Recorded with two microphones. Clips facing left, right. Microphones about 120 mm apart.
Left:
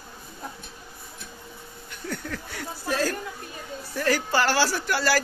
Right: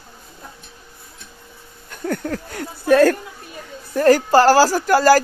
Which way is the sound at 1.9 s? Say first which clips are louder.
Right 10 dB; 50° right (ahead or behind).